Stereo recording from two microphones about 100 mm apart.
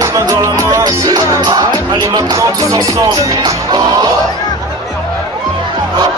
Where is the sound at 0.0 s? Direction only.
35° right (ahead or behind).